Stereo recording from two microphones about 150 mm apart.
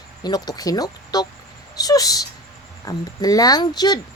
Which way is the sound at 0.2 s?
25° left (ahead or behind).